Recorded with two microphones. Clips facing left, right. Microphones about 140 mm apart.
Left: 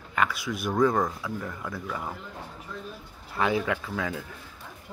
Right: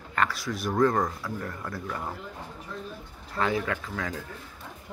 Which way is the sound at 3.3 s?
15° left (ahead or behind).